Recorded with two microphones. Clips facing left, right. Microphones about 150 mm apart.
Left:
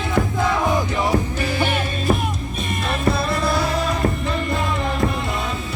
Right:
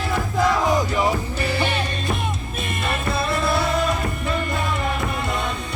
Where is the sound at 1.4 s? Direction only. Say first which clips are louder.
Left 1 dB; 10° left (ahead or behind).